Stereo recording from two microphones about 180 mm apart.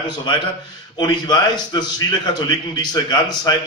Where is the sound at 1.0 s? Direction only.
25° left (ahead or behind).